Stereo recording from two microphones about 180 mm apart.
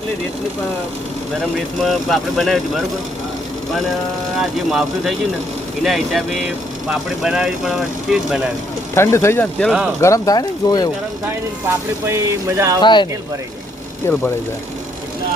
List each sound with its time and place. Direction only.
1.8 s speech: centre (ahead or behind)
4.4 s speech: centre (ahead or behind)
9.0 s speech: 15° left (ahead or behind)
10.0 s speech: 20° left (ahead or behind)
12.0 s speech: 15° right (ahead or behind)
12.8 s speech: 25° left (ahead or behind)
14.0 s speech: 15° left (ahead or behind)